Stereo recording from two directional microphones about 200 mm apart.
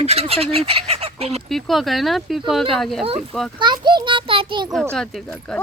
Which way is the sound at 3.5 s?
20° right (ahead or behind).